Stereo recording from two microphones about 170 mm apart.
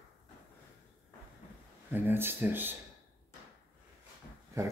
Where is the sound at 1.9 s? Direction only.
10° right (ahead or behind).